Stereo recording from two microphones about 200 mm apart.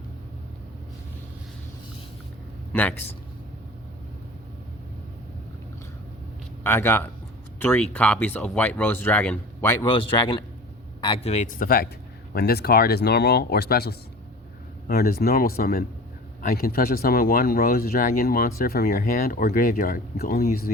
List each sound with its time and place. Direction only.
2.7 s speech: 10° left (ahead or behind)
6.6 s speech: 10° left (ahead or behind)
9.9 s a man's voice: 25° left (ahead or behind); by 20.6 s 50° left (ahead or behind)